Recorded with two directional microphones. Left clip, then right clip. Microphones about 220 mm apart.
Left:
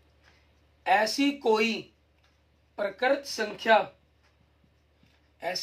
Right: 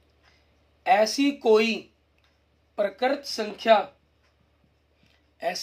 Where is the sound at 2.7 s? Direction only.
50° right (ahead or behind).